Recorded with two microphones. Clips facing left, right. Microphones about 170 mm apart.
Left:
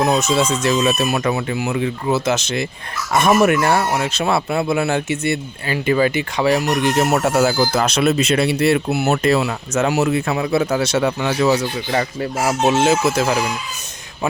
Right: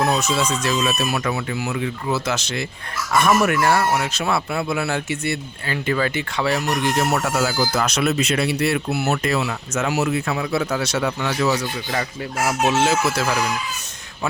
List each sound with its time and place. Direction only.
0.0 s speech: 20° left (ahead or behind)